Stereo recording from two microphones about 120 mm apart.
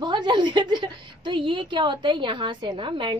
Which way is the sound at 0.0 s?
40° right (ahead or behind).